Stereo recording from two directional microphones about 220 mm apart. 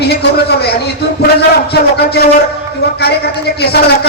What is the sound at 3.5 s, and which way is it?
Speech, 45° left (ahead or behind).